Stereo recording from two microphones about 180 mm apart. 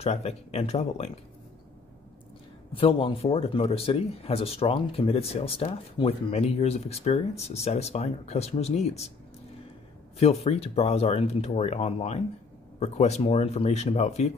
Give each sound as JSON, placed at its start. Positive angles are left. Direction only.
{"t": 0.0, "sound": "speech", "side_deg": 35}
{"t": 2.7, "sound": "speech", "side_deg": 30}
{"t": 10.1, "sound": "speech", "side_deg": 35}